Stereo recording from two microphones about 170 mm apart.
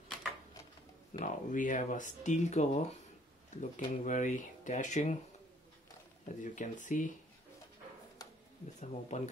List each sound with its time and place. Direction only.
1.2 s speech: 50° left (ahead or behind)
6.2 s speech: 45° left (ahead or behind)
8.2 s a sound: 20° left (ahead or behind)
8.8 s speech: 40° left (ahead or behind)